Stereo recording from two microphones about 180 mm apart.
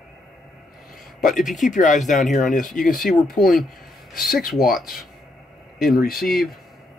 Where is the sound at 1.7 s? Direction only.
45° left (ahead or behind).